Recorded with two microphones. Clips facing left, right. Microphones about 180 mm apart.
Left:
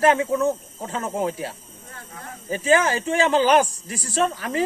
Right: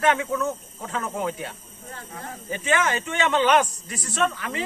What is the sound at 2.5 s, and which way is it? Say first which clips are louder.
Speech: left 5 dB; 30° left (ahead or behind).